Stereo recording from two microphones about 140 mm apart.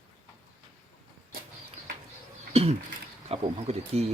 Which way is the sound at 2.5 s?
45° right (ahead or behind).